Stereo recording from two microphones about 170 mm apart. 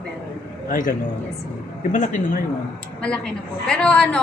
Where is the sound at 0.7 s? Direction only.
55° left (ahead or behind).